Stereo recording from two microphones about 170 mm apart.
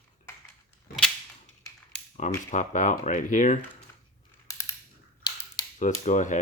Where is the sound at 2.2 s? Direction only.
45° left (ahead or behind).